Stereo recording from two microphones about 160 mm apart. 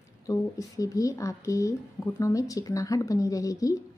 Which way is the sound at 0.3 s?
20° left (ahead or behind).